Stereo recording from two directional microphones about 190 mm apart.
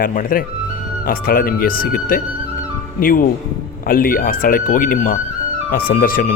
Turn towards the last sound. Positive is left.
turn(degrees=45)  # may be behind; listen again after turning